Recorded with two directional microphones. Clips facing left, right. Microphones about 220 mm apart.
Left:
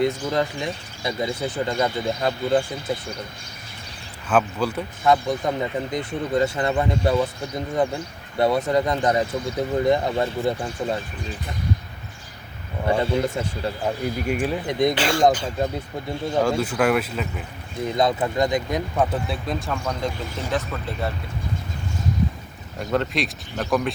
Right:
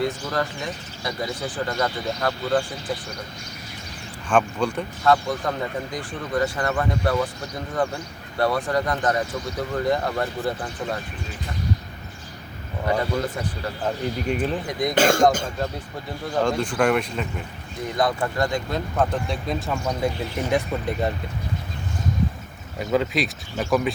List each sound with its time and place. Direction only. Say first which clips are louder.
0.0 s speech: left 3 dB; 20° left (ahead or behind)
4.3 s speech: even; 5° left (ahead or behind)
5.0 s speech: left 1 dB; 20° left (ahead or behind)
12.9 s speech: left 3 dB; 25° left (ahead or behind)
13.8 s speech: right 1 dB; 10° left (ahead or behind)
14.7 s speech: left 5 dB; 25° left (ahead or behind)
14.9 s speech: right 1 dB; 45° right (ahead or behind)
16.4 s speech: even; 5° left (ahead or behind)
17.9 s speech: left 2 dB; 20° left (ahead or behind); by 19.8 s centre (ahead or behind)
19.8 s speech: right 2 dB; 10° right (ahead or behind)
22.8 s speech: right 1 dB; centre (ahead or behind)